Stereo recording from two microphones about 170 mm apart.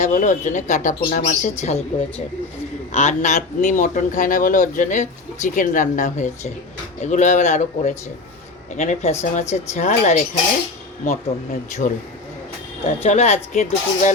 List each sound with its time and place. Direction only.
0.0 s speech: 45° left (ahead or behind)
11.8 s speech: 45° left (ahead or behind)